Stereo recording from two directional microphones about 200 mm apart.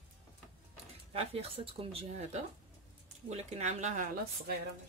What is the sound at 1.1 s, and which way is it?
Speech, 30° right (ahead or behind).